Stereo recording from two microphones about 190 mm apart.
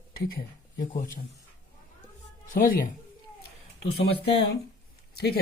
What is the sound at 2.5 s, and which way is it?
Speech, 45° left (ahead or behind).